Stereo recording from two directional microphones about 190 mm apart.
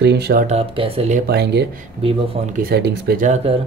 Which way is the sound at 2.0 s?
30° right (ahead or behind).